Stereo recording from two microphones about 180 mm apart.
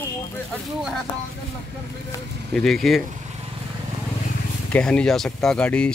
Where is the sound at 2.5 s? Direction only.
Centre (ahead or behind).